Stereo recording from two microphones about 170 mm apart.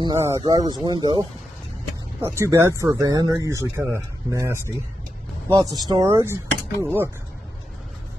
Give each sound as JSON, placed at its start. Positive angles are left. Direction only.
{"t": 0.0, "sound": "speech", "side_deg": -20}
{"t": 2.2, "sound": "speech", "side_deg": -15}